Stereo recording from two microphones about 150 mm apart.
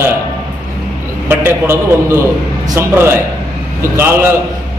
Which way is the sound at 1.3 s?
15° right (ahead or behind).